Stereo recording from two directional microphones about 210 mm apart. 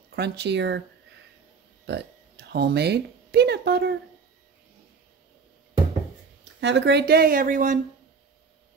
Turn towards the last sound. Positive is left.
turn(degrees=-40)  # may be behind; listen again after turning